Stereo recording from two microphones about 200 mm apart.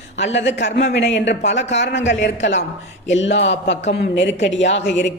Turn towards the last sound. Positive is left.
turn(degrees=60)  # may be behind; listen again after turning